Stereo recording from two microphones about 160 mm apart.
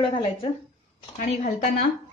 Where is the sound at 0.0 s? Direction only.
35° left (ahead or behind).